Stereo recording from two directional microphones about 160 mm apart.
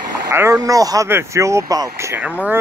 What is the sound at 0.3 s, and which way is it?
Speech, 20° right (ahead or behind).